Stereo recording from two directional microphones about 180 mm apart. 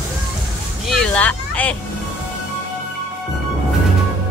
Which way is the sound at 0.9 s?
5° left (ahead or behind).